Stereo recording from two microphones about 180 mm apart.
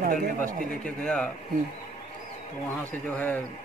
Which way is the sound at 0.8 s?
5° left (ahead or behind).